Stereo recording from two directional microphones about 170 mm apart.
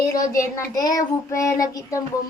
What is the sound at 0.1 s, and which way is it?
Child singing, 20° left (ahead or behind).